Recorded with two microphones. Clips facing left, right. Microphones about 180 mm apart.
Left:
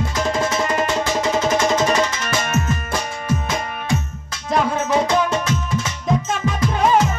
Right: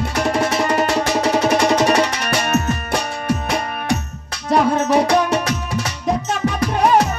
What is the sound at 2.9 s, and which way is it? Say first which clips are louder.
Music: right 4 dB; 70° right (ahead or behind).